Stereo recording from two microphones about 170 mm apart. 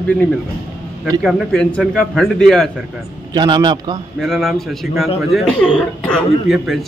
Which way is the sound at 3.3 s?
25° right (ahead or behind).